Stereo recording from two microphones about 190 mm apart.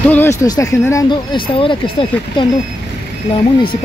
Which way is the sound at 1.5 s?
30° left (ahead or behind).